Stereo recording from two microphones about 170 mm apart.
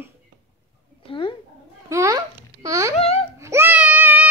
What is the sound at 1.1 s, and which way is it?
Speech, 30° left (ahead or behind).